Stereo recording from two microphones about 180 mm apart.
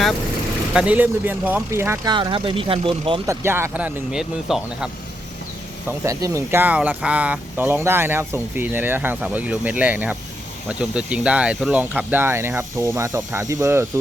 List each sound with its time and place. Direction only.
0.7 s speech: 5° right (ahead or behind)
2.1 s speech: 25° right (ahead or behind)
3.2 s speech: 15° right (ahead or behind)
6.0 s speech: 15° right (ahead or behind)